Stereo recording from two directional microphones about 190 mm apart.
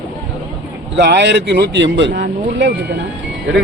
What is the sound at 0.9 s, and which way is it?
Speech, 65° right (ahead or behind).